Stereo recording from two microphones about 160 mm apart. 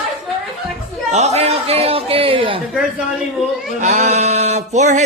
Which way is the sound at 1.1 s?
45° right (ahead or behind).